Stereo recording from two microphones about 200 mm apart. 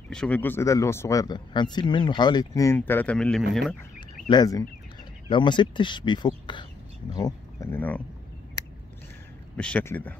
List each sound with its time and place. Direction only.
0.1 s speech: 5° left (ahead or behind)
4.3 s speech: 20° left (ahead or behind)
9.6 s speech: 5° left (ahead or behind)